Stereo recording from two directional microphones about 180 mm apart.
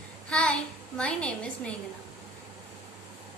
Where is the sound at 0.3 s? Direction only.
5° left (ahead or behind).